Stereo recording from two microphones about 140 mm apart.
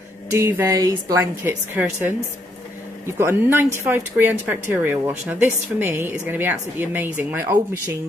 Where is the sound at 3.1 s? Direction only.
20° right (ahead or behind).